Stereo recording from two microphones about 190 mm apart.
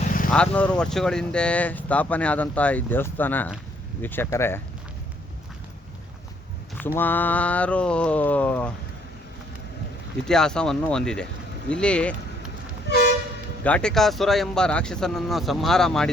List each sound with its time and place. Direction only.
0.3 s speech: 5° left (ahead or behind)
6.7 s speech: 10° left (ahead or behind)
10.2 s speech: 5° left (ahead or behind)
13.7 s speech: 5° left (ahead or behind)